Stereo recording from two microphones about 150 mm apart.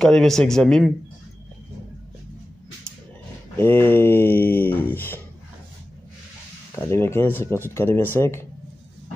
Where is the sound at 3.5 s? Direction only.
15° left (ahead or behind).